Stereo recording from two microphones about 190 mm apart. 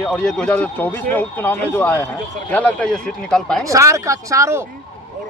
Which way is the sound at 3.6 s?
15° right (ahead or behind).